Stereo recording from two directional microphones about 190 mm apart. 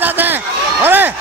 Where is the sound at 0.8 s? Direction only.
10° right (ahead or behind).